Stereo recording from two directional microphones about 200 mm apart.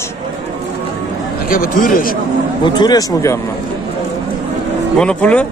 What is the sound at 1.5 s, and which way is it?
Speech, 45° left (ahead or behind).